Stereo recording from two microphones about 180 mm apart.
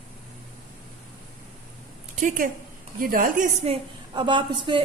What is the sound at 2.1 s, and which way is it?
Speech, 45° right (ahead or behind).